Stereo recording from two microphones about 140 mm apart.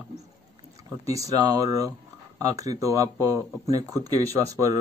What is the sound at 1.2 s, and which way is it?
Speech, 25° right (ahead or behind).